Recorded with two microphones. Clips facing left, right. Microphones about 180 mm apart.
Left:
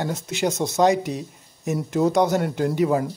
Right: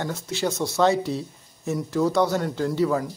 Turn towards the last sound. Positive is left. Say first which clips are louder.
# left 2 dB
turn(degrees=20)  # may be behind; listen again after turning